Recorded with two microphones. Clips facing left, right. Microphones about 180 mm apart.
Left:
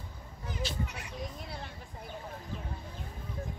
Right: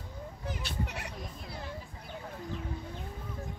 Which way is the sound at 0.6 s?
70° right (ahead or behind).